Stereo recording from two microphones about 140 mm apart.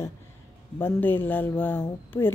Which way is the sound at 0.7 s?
15° left (ahead or behind).